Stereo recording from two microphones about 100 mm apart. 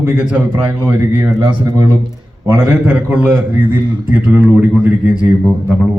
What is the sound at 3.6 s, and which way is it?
Speech, 50° right (ahead or behind).